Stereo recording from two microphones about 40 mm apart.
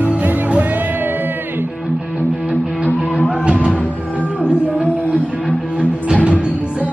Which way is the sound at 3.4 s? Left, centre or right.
Right.